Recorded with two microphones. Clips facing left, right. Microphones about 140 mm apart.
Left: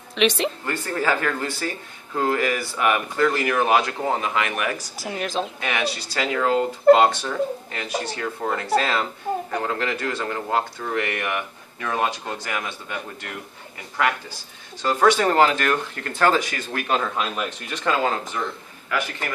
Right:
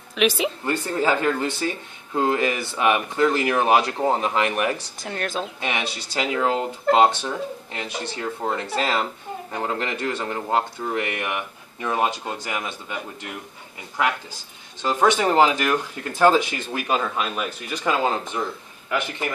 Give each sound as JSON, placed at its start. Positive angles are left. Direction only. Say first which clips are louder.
{"t": 0.1, "sound": "a woman's voice", "louder": "even", "side_deg": -5}
{"t": 0.7, "sound": "speech", "louder": "right 4 dB", "side_deg": -20}
{"t": 4.9, "sound": "speech", "louder": "left 2 dB", "side_deg": 5}
{"t": 5.6, "sound": "speech", "louder": "left 2 dB", "side_deg": -25}
{"t": 14.8, "sound": "speech", "louder": "left 1 dB", "side_deg": -15}
{"t": 18.0, "sound": "speech", "louder": "right 1 dB", "side_deg": -20}